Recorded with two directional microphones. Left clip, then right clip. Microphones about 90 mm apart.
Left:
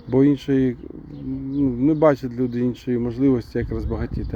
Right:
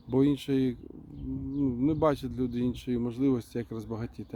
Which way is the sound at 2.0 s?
45° right (ahead or behind).